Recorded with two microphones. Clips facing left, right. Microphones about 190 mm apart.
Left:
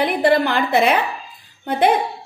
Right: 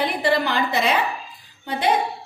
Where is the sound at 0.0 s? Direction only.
55° left (ahead or behind).